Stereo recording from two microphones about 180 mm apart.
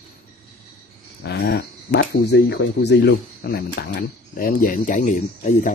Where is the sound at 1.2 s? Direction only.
65° left (ahead or behind).